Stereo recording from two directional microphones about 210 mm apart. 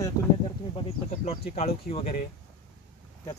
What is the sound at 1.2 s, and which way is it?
Speech, 30° left (ahead or behind).